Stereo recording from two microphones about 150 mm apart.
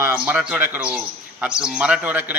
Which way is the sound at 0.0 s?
15° right (ahead or behind).